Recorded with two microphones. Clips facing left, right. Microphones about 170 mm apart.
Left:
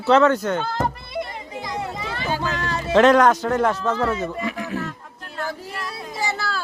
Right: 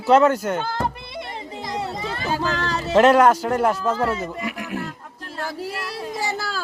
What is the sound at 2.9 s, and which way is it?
Speech, 5° right (ahead or behind).